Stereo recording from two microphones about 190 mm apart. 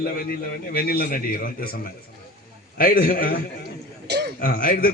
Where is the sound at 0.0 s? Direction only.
50° left (ahead or behind).